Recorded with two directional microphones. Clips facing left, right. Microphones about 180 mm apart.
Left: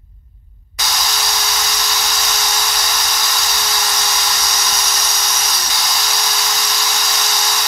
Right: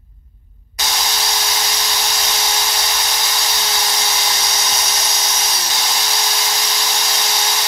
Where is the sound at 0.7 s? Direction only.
25° right (ahead or behind).